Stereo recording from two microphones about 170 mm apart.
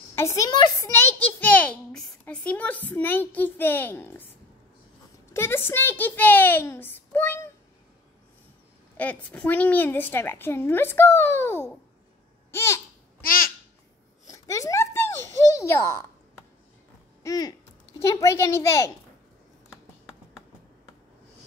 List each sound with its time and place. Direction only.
0.1 s a child's voice: 15° left (ahead or behind)
5.3 s a woman's voice: 15° left (ahead or behind)
8.9 s a woman's voice: 10° left (ahead or behind)
12.4 s babbling: 15° left (ahead or behind)
14.2 s a sound: 20° left (ahead or behind)
17.2 s a child's voice: 20° left (ahead or behind)